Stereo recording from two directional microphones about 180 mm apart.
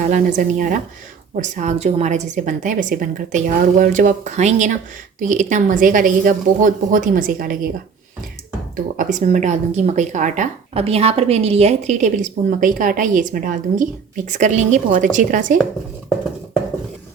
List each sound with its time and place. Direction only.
0.1 s a woman's voice: 45° right (ahead or behind)
9.0 s a woman's voice: 45° right (ahead or behind)